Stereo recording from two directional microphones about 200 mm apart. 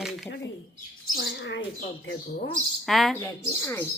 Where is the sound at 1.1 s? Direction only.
65° left (ahead or behind).